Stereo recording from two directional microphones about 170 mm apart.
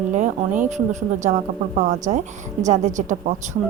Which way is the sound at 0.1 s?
45° right (ahead or behind).